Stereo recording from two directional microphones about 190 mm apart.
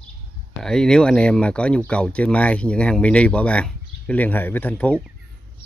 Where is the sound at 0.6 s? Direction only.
5° left (ahead or behind).